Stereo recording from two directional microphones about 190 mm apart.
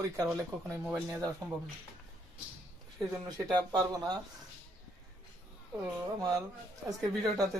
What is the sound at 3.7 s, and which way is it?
Speech, 20° right (ahead or behind).